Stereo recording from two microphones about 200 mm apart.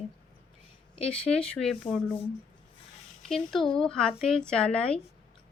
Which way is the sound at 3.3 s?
Centre (ahead or behind).